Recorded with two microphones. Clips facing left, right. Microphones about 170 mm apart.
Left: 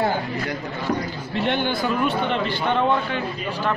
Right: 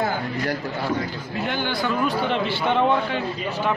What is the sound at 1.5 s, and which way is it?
Speech, 20° left (ahead or behind).